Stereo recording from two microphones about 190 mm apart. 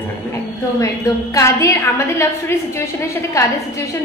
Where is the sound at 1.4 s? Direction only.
15° left (ahead or behind).